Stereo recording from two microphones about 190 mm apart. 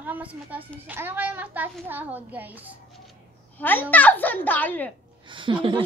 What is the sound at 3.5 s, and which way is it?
A child's voice, 10° left (ahead or behind).